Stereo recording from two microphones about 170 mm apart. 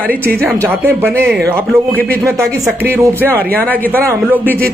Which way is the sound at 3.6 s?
10° left (ahead or behind).